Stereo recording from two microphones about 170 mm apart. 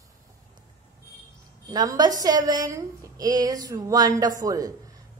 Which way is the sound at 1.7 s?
25° right (ahead or behind).